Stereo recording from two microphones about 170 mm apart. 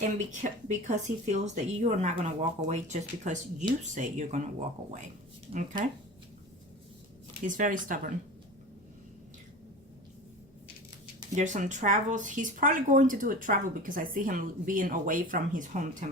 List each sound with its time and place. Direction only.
0.0 s speech: 45° right (ahead or behind)
7.4 s speech: 50° right (ahead or behind)
11.3 s speech: 45° right (ahead or behind)